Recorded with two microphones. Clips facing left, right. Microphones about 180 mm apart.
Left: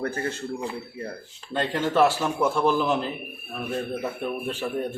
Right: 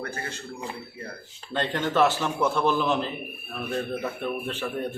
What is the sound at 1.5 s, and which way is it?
A man's voice, 5° left (ahead or behind).